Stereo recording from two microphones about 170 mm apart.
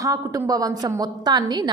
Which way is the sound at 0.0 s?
20° right (ahead or behind).